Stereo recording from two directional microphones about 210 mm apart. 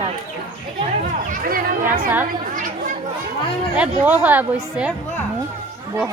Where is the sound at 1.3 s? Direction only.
40° right (ahead or behind).